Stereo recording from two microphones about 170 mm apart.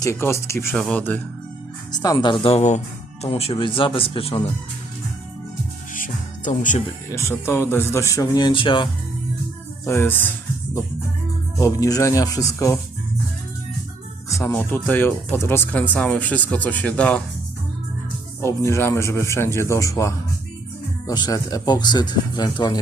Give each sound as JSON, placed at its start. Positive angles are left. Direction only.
{"t": 0.0, "sound": "speech", "side_deg": 15}
{"t": 1.9, "sound": "speech", "side_deg": 25}
{"t": 5.9, "sound": "music", "side_deg": 50}
{"t": 7.1, "sound": "speech", "side_deg": 15}
{"t": 9.8, "sound": "speech", "side_deg": 15}
{"t": 11.5, "sound": "speech", "side_deg": 20}
{"t": 14.3, "sound": "speech", "side_deg": 15}
{"t": 18.3, "sound": "speech", "side_deg": 15}